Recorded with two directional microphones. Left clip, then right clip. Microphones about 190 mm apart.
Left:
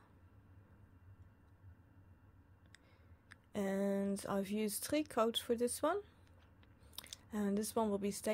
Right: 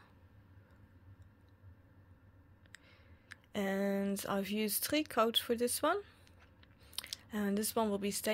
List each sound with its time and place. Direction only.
3.3 s speech: 10° left (ahead or behind)